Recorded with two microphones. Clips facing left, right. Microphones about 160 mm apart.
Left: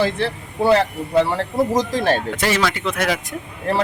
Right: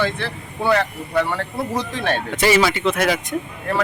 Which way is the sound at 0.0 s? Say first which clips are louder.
Left 3 dB; 35° left (ahead or behind).